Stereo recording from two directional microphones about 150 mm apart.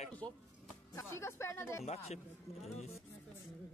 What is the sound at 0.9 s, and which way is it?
Speech, 20° left (ahead or behind).